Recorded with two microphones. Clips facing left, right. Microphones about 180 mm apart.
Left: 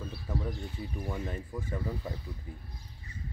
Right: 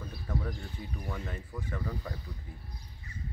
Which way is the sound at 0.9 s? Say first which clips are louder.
Left 3 dB; 15° left (ahead or behind).